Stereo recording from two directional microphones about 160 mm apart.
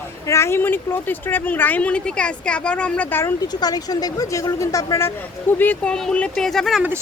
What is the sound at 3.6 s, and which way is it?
A woman's voice, 25° left (ahead or behind).